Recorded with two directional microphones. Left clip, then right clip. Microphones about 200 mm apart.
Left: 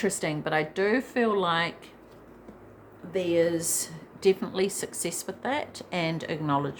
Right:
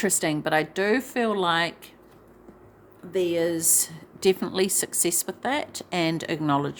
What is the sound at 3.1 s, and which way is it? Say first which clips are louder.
Speech: even; 55° right (ahead or behind).